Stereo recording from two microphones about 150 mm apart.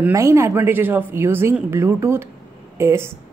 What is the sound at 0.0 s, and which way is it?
Speech, 20° right (ahead or behind).